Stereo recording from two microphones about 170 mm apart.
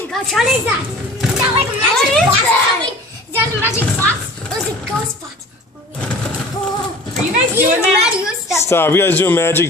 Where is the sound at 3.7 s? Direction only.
5° left (ahead or behind).